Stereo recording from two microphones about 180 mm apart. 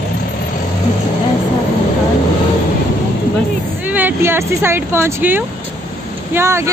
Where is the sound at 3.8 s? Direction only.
10° right (ahead or behind).